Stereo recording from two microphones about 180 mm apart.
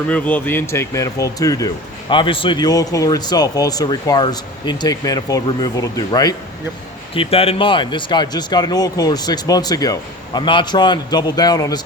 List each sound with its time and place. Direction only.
0.1 s speech: 10° left (ahead or behind)